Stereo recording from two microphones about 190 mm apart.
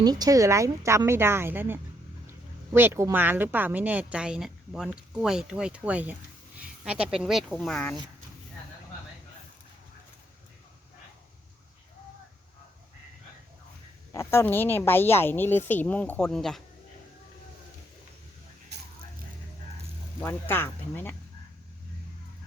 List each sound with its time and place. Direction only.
0.0 s a woman's voice: 20° right (ahead or behind); by 7.9 s 5° left (ahead or behind)
14.1 s speech: 15° left (ahead or behind)
18.7 s a sound: 60° right (ahead or behind)
20.2 s speech: 10° left (ahead or behind)